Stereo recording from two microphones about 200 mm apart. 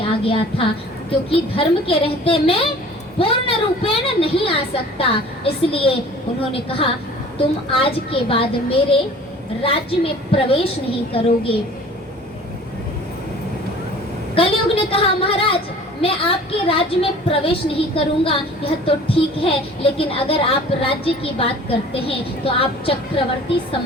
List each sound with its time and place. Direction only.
0.0 s a woman's voice: 25° left (ahead or behind)
14.3 s a woman's voice: 25° left (ahead or behind)
16.6 s a woman's voice: 25° left (ahead or behind)